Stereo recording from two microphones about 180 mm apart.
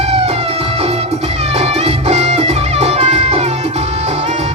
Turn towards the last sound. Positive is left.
turn(degrees=-35)  # may be behind; listen again after turning